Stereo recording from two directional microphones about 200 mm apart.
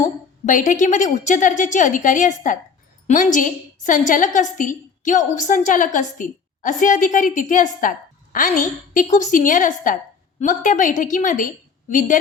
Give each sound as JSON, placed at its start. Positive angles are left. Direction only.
{"t": 0.0, "sound": "a woman's voice", "side_deg": 40}